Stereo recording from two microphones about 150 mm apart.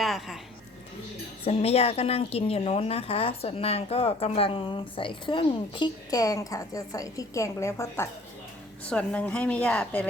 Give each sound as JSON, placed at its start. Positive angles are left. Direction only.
{"t": 0.0, "sound": "a woman's voice", "side_deg": 0}
{"t": 1.5, "sound": "a woman's voice", "side_deg": 40}